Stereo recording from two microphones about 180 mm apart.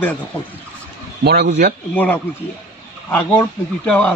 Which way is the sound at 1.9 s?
10° left (ahead or behind).